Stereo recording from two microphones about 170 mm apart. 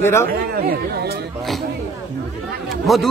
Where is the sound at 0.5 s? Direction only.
65° right (ahead or behind).